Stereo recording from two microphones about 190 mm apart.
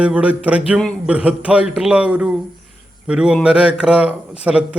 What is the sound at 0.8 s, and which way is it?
A man's voice, 5° left (ahead or behind).